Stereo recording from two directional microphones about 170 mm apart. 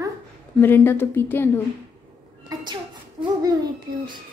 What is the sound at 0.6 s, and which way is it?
A woman's voice, 10° left (ahead or behind).